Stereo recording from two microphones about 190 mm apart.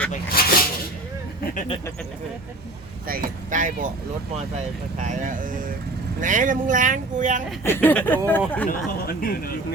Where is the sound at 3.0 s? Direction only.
45° right (ahead or behind).